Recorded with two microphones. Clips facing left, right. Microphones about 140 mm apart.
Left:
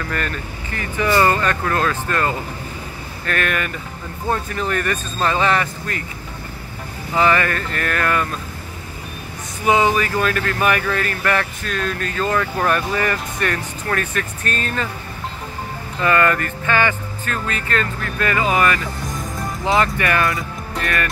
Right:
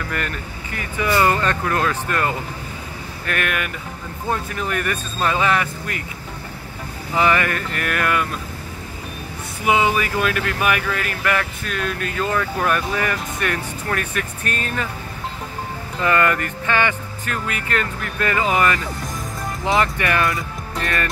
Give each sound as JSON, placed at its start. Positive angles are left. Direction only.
{"t": 0.7, "sound": "speech", "side_deg": -10}
{"t": 1.4, "sound": "speech", "side_deg": -25}
{"t": 1.8, "sound": "speech", "side_deg": -15}
{"t": 7.2, "sound": "speech", "side_deg": -15}
{"t": 9.7, "sound": "speech", "side_deg": -10}
{"t": 16.0, "sound": "speech", "side_deg": -20}
{"t": 19.0, "sound": "music", "side_deg": 0}
{"t": 19.8, "sound": "speech", "side_deg": -20}